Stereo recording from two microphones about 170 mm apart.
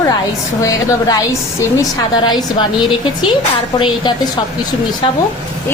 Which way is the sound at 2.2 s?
25° left (ahead or behind).